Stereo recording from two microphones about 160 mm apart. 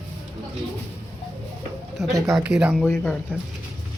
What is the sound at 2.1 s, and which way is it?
Speech, 20° right (ahead or behind).